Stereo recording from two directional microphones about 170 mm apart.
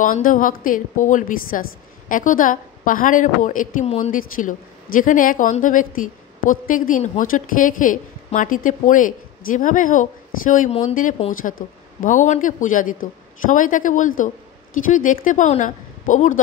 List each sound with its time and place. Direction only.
0.0 s a woman's voice: 50° left (ahead or behind)